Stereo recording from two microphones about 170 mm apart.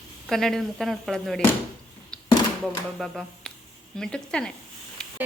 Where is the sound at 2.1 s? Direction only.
5° left (ahead or behind).